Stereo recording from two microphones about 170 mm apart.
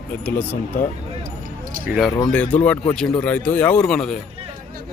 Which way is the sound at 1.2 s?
55° right (ahead or behind).